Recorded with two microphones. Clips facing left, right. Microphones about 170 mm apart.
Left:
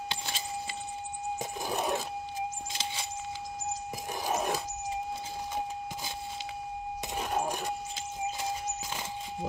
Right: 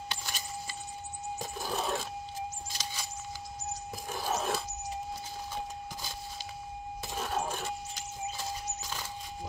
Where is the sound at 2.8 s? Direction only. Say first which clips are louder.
Left 3 dB; 25° left (ahead or behind).